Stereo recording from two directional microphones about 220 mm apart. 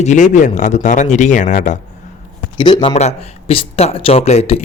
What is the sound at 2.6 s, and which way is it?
Speech, 20° left (ahead or behind).